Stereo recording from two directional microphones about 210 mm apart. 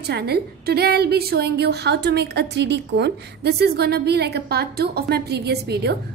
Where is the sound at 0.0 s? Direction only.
50° right (ahead or behind).